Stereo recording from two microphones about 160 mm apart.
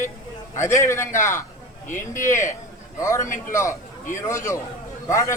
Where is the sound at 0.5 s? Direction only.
20° left (ahead or behind).